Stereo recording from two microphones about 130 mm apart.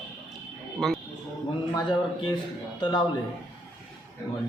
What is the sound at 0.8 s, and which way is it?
Speech, centre (ahead or behind).